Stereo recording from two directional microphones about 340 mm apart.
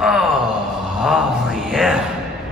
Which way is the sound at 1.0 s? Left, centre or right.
Centre.